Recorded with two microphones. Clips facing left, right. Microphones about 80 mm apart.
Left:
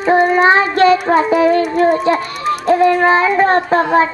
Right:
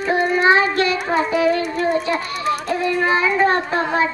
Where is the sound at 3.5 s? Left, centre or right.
Left.